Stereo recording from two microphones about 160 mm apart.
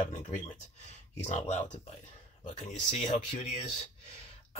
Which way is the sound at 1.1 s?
45° left (ahead or behind).